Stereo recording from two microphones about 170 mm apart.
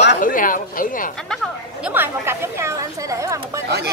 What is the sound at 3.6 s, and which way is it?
Speech, 75° right (ahead or behind).